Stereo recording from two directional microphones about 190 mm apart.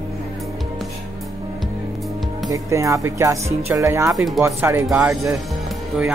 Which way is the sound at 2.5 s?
15° right (ahead or behind).